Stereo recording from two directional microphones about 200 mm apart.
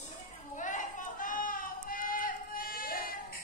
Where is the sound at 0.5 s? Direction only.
40° left (ahead or behind).